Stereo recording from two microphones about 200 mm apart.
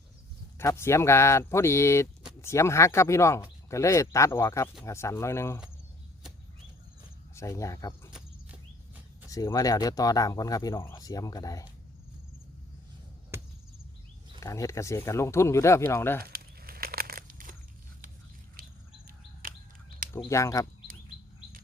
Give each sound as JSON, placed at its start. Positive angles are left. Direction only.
{"t": 0.6, "sound": "speech", "side_deg": 15}
{"t": 7.3, "sound": "speech", "side_deg": 15}
{"t": 9.3, "sound": "speech", "side_deg": 15}
{"t": 13.3, "sound": "a sound", "side_deg": -10}
{"t": 14.4, "sound": "speech", "side_deg": 15}
{"t": 16.2, "sound": "crumpling", "side_deg": -50}
{"t": 18.6, "sound": "cricket", "side_deg": -45}
{"t": 19.0, "sound": "bird", "side_deg": -45}
{"t": 20.3, "sound": "speech", "side_deg": 15}